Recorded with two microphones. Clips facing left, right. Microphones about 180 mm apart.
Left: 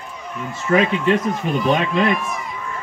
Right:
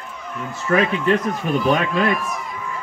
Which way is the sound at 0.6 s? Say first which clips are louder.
Left 1 dB; 20° left (ahead or behind).